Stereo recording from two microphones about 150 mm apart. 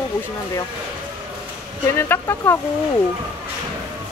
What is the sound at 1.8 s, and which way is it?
Speech, 15° left (ahead or behind).